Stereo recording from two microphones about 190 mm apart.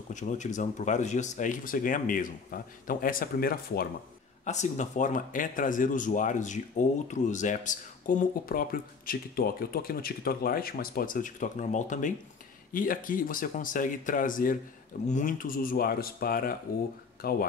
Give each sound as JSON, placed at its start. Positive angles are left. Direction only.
{"t": 0.1, "sound": "speech", "side_deg": 40}
{"t": 4.5, "sound": "speech", "side_deg": 40}